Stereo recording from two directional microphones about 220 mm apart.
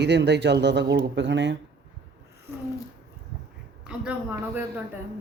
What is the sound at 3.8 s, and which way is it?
Speech, 5° right (ahead or behind).